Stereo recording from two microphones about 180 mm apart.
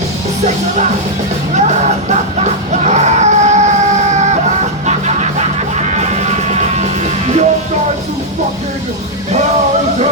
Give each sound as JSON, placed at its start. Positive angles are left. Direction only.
{"t": 1.5, "sound": "music", "side_deg": -40}